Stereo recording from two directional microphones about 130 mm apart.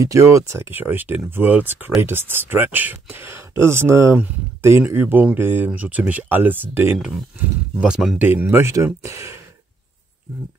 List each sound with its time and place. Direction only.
0.0 s speech: 25° right (ahead or behind)
7.8 s speech: 5° right (ahead or behind)
8.2 s speech: 15° right (ahead or behind)